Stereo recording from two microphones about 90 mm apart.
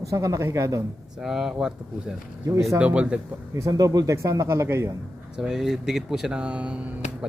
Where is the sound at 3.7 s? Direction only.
45° right (ahead or behind).